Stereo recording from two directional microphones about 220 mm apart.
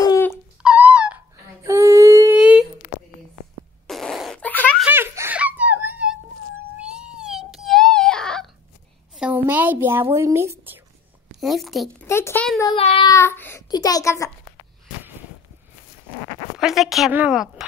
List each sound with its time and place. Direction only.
0.0 s dog: 15° left (ahead or behind)
0.6 s a sound: 5° right (ahead or behind)
3.8 s fart: centre (ahead or behind)
4.8 s giggle: 10° right (ahead or behind)
6.8 s wail: 5° right (ahead or behind)
9.1 s a sound: 5° right (ahead or behind)
10.1 s speech: 10° right (ahead or behind)
11.3 s a woman's voice: centre (ahead or behind)
12.1 s a child's voice: 10° left (ahead or behind)
12.6 s child singing: 25° left (ahead or behind)
13.1 s a child's voice: 10° left (ahead or behind)
16.5 s a woman's voice: centre (ahead or behind)